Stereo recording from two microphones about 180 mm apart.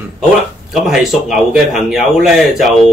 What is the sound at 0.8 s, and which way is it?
Speech, centre (ahead or behind).